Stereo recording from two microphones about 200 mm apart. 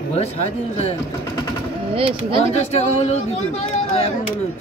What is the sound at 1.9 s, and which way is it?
Speech, 25° right (ahead or behind).